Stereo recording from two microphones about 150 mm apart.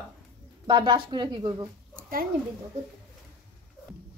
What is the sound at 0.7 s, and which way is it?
A woman's voice, 30° right (ahead or behind).